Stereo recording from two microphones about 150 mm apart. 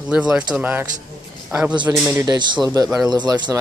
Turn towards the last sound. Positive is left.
turn(degrees=-30)  # may be behind; listen again after turning